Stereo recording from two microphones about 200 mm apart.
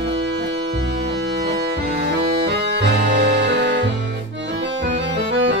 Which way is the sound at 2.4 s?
55° right (ahead or behind).